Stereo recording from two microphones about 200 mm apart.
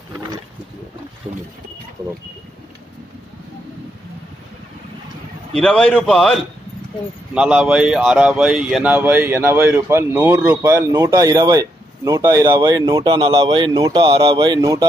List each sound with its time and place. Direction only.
5.6 s a man's voice: 5° left (ahead or behind)
7.3 s speech: 5° right (ahead or behind)